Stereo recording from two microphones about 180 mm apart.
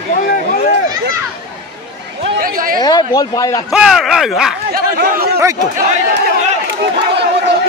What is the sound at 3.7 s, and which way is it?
Speech, centre (ahead or behind).